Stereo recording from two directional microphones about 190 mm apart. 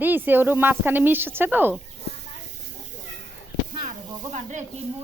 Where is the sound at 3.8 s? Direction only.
40° right (ahead or behind).